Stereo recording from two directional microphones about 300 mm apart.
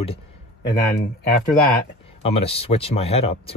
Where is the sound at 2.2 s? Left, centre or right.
Centre.